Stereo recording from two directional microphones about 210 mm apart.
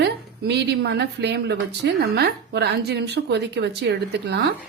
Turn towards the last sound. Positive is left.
turn(degrees=-50)  # may be behind; listen again after turning